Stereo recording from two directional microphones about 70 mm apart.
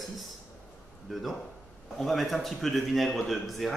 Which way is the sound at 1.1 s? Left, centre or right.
Centre.